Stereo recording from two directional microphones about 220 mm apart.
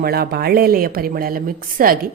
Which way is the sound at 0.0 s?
45° right (ahead or behind).